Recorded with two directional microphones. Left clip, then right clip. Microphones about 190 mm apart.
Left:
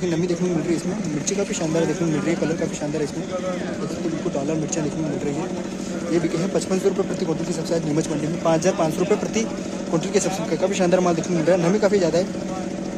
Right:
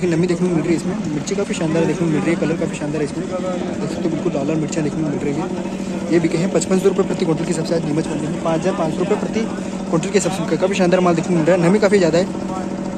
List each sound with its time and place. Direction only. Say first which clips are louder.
0.1 s speech: right 4 dB; 5° left (ahead or behind)
6.5 s speech: right 5 dB; centre (ahead or behind)
8.5 s speech: even; 25° left (ahead or behind)
9.9 s speech: right 4 dB; 5° left (ahead or behind)